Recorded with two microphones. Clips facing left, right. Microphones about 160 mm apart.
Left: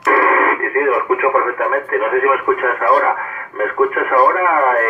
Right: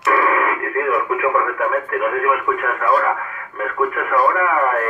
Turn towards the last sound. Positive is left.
turn(degrees=45)  # may be behind; listen again after turning